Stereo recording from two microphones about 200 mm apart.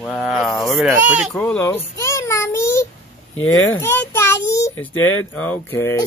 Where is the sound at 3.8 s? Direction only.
10° left (ahead or behind).